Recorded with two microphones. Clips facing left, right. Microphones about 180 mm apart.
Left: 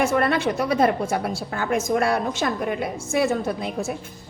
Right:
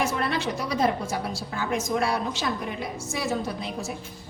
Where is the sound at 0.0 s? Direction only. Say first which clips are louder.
Left 6 dB; 55° left (ahead or behind).